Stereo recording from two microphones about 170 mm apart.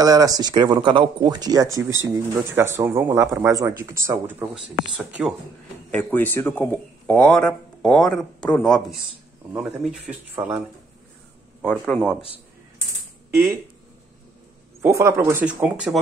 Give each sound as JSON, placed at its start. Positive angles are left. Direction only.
{"t": 0.0, "sound": "speech", "side_deg": -20}
{"t": 5.9, "sound": "speech", "side_deg": 10}
{"t": 11.8, "sound": "speech", "side_deg": 5}
{"t": 14.8, "sound": "speech", "side_deg": -15}